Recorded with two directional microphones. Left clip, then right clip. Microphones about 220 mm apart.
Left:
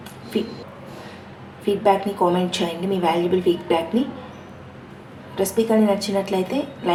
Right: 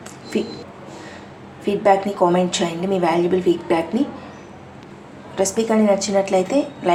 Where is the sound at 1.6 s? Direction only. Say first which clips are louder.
Right 2 dB; 15° right (ahead or behind).